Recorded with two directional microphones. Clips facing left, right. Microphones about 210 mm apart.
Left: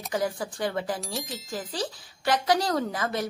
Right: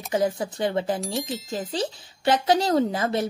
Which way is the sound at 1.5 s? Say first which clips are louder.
Right 3 dB; 25° right (ahead or behind).